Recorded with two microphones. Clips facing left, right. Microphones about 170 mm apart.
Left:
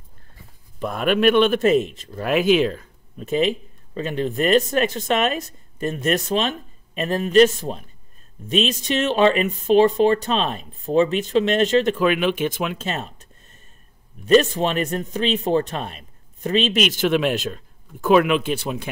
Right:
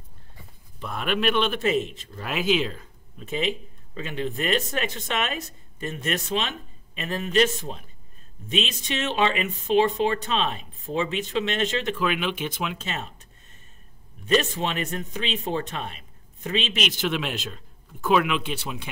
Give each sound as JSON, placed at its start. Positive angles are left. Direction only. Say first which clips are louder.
{"t": 0.7, "sound": "a man's voice", "louder": "left 7 dB", "side_deg": 50}
{"t": 14.2, "sound": "a man's voice", "louder": "left 7 dB", "side_deg": 40}